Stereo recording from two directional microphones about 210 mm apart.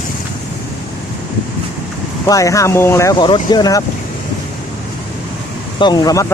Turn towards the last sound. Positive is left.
turn(degrees=15)  # may be behind; listen again after turning